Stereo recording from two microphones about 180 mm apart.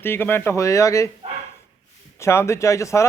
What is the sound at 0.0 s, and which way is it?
A man's voice, 10° left (ahead or behind).